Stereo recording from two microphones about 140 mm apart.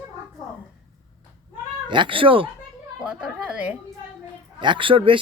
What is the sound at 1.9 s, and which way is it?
Speech, 35° right (ahead or behind).